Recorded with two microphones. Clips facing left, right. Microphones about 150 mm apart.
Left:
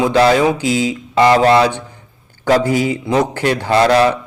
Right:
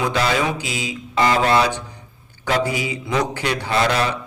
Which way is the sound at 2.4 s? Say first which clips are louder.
Left 7 dB; 45° left (ahead or behind).